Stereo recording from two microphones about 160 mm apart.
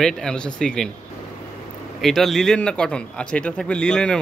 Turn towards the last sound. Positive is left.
turn(degrees=5)  # may be behind; listen again after turning